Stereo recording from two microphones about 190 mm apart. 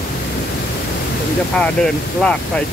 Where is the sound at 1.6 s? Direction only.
5° left (ahead or behind).